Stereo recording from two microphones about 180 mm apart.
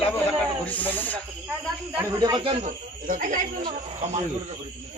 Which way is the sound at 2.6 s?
45° right (ahead or behind).